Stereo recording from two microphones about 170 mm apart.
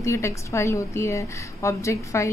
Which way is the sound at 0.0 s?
15° left (ahead or behind).